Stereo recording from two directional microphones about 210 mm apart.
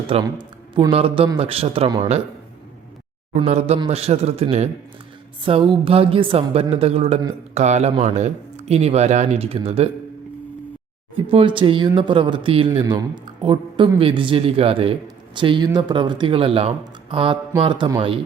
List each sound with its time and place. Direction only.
0.1 s a man's voice: 20° right (ahead or behind)
3.3 s a man's voice: 30° right (ahead or behind)
11.3 s a man's voice: 25° right (ahead or behind)